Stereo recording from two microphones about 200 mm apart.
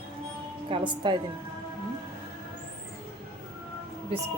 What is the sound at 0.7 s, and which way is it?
Speech, 25° right (ahead or behind).